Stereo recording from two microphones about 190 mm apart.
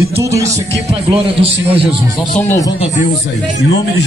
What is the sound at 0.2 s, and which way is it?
Speech, 15° right (ahead or behind).